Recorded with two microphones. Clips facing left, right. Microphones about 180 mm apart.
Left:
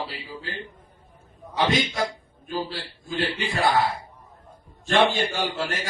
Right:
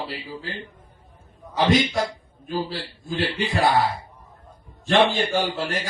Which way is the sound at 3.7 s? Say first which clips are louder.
Right 1 dB; 45° left (ahead or behind).